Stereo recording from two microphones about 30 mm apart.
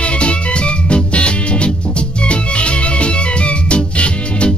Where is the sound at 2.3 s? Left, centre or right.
Left.